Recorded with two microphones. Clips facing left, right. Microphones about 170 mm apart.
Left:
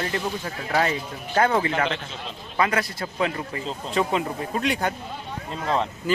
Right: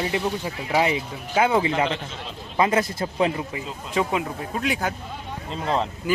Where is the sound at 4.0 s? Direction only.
Centre (ahead or behind).